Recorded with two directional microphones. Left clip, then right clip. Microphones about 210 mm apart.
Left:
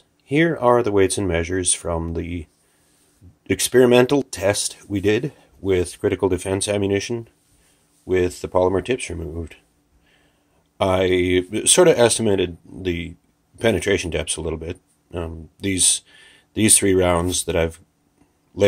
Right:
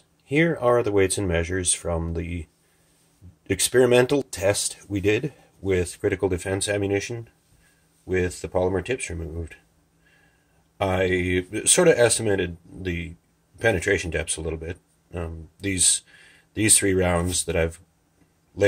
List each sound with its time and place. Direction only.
0.3 s speech: 25° left (ahead or behind)
3.4 s speech: 25° left (ahead or behind)
10.8 s speech: 40° left (ahead or behind)